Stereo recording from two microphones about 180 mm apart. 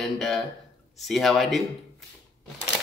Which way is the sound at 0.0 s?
Centre (ahead or behind).